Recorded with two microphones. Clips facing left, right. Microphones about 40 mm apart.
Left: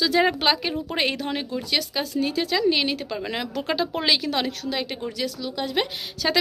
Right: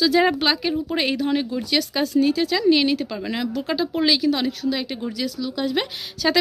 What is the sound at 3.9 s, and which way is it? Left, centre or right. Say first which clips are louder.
Speech: right 6 dB; left.